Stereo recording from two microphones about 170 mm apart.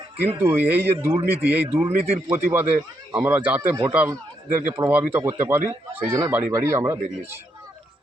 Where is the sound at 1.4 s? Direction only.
10° right (ahead or behind).